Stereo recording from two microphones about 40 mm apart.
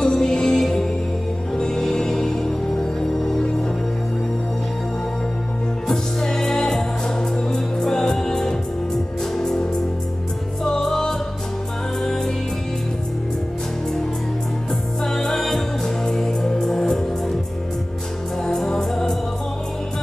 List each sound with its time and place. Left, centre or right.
0.0 s music: centre
5.9 s music: centre
15.0 s music: centre
18.7 s music: centre